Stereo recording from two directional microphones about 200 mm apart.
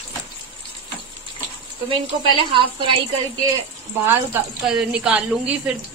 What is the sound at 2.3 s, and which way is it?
Speech, 25° right (ahead or behind).